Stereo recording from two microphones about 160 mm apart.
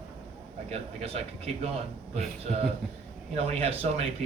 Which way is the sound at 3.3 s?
40° right (ahead or behind).